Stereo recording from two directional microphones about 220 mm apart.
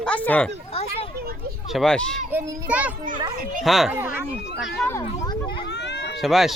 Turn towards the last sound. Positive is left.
turn(degrees=0)  # may be behind; listen again after turning